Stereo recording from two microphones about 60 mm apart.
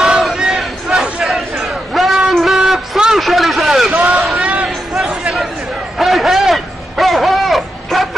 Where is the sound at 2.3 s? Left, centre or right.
Centre.